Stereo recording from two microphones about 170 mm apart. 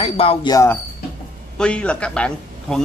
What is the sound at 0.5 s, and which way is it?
Speech, 15° left (ahead or behind).